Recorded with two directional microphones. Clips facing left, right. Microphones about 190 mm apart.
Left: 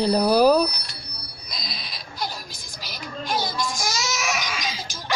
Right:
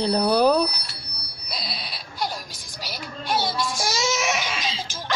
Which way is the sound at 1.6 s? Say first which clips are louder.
Right 3 dB; 35° right (ahead or behind).